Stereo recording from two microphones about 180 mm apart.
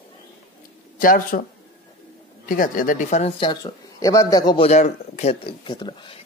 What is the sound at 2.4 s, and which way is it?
Speech, 50° left (ahead or behind).